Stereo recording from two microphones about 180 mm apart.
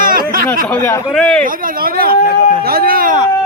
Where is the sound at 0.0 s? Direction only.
50° right (ahead or behind).